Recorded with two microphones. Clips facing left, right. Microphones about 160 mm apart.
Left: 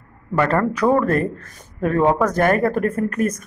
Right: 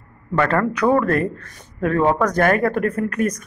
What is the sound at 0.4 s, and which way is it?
A man's voice, 5° left (ahead or behind).